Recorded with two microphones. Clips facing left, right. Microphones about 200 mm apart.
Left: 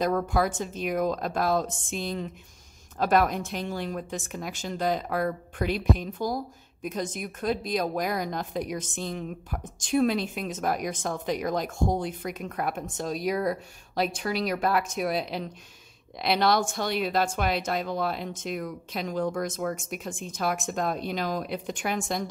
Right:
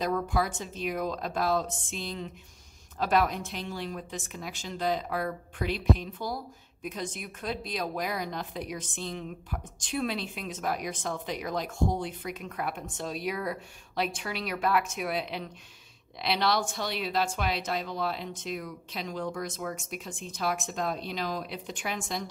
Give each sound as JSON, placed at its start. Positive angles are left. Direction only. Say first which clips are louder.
{"t": 0.0, "sound": "a woman's voice", "louder": "left 4 dB", "side_deg": 50}